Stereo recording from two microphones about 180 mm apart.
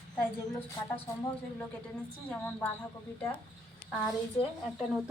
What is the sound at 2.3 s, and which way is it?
Speech, 10° left (ahead or behind).